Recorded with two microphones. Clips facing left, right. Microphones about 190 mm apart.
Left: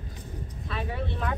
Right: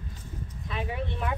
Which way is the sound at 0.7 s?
15° right (ahead or behind).